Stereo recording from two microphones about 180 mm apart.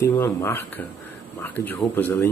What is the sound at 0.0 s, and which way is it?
Speech, 20° left (ahead or behind).